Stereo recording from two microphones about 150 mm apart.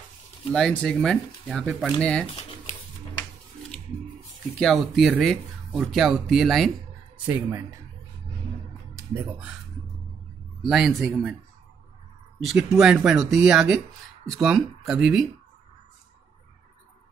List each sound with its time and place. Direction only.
0.5 s speech: 5° left (ahead or behind)
4.6 s speech: centre (ahead or behind)
7.2 s speech: 20° right (ahead or behind)
10.7 s speech: centre (ahead or behind)
12.4 s speech: centre (ahead or behind)